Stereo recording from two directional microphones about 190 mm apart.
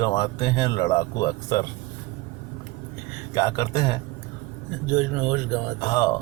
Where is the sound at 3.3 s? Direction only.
20° left (ahead or behind).